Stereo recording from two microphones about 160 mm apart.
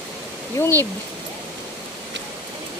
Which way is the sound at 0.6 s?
20° left (ahead or behind).